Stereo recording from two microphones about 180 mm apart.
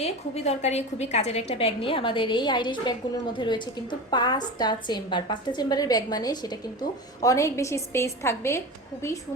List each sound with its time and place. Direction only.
0.0 s a woman's voice: 35° left (ahead or behind); by 9.1 s 15° left (ahead or behind)